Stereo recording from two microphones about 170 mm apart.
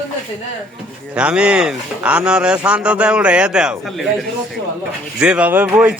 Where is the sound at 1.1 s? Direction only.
5° right (ahead or behind).